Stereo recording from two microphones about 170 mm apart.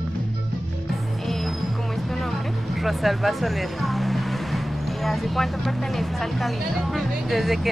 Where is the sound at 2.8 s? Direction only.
Centre (ahead or behind).